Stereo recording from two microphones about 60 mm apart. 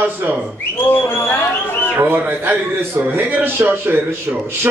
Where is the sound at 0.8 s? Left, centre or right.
Left.